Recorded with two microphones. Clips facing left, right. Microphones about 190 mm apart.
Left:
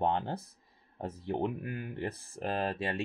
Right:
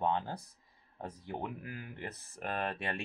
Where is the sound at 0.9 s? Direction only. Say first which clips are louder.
Left 7 dB; 25° left (ahead or behind).